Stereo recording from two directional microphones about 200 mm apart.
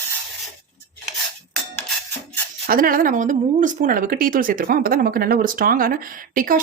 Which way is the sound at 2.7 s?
45° right (ahead or behind).